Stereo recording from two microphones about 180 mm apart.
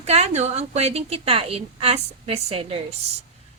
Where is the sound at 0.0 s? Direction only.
35° right (ahead or behind).